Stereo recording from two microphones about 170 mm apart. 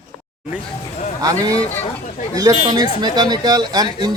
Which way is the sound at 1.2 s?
20° right (ahead or behind).